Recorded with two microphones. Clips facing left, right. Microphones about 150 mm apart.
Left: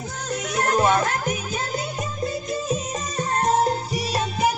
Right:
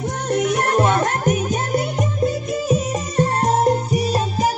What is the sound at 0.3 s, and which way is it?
Music, 60° right (ahead or behind).